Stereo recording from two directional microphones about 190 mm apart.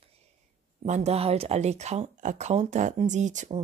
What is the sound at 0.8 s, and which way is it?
Speech, 35° right (ahead or behind).